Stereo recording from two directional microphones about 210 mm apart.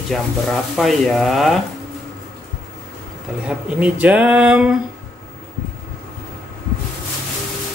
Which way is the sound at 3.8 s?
5° right (ahead or behind).